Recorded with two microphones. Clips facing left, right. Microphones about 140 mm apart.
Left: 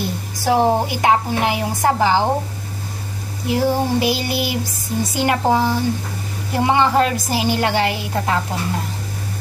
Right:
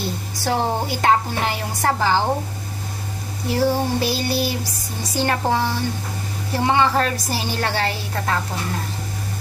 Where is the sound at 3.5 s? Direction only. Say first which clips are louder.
Left 2 dB; 15° left (ahead or behind).